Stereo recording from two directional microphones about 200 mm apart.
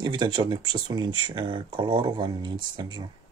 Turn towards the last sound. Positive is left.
turn(degrees=-20)  # may be behind; listen again after turning